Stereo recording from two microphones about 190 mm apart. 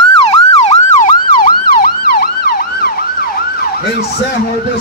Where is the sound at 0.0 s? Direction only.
30° left (ahead or behind).